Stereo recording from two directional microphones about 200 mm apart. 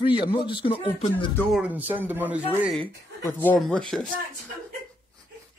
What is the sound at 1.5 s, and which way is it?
Speech, 5° right (ahead or behind).